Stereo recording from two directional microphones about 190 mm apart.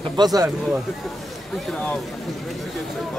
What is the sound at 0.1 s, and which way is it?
Speech, 20° right (ahead or behind).